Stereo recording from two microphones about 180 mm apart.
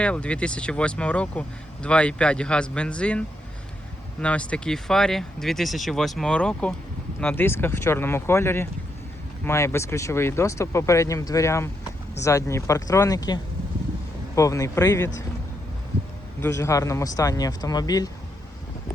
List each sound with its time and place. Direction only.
0.0 s speech: 5° left (ahead or behind)
16.4 s speech: 15° left (ahead or behind)